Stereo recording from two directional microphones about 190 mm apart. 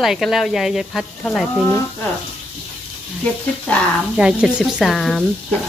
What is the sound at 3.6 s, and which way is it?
Speech, 5° left (ahead or behind).